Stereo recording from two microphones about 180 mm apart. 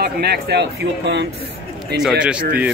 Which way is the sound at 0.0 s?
65° right (ahead or behind).